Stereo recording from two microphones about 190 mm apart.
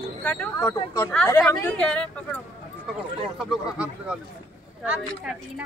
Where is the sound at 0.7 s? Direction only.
20° left (ahead or behind).